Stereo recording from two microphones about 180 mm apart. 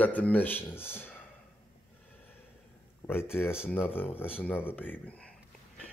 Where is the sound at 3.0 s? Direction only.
20° left (ahead or behind).